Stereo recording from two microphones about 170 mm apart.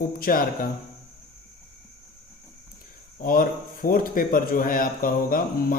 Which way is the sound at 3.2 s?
55° left (ahead or behind).